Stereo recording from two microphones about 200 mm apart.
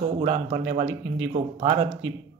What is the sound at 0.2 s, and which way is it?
Speech, 30° right (ahead or behind).